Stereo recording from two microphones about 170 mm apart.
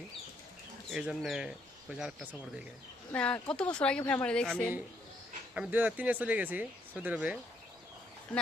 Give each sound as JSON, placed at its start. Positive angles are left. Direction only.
{"t": 0.9, "sound": "speech", "side_deg": -5}
{"t": 3.1, "sound": "speech", "side_deg": 10}
{"t": 5.5, "sound": "speech", "side_deg": -10}